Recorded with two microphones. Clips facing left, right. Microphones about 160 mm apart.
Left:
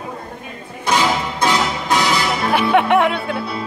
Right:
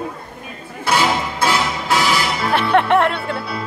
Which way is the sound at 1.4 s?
20° left (ahead or behind).